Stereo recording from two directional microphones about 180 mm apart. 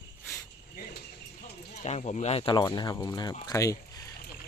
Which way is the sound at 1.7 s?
40° left (ahead or behind).